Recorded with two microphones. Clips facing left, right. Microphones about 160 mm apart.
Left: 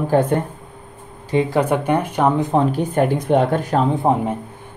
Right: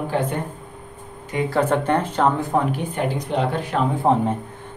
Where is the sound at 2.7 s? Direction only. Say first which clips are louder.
Left 6 dB; 50° left (ahead or behind).